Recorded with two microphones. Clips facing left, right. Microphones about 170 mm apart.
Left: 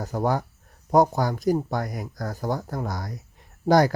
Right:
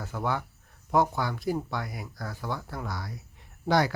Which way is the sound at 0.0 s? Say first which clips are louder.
Left 6 dB; 40° left (ahead or behind).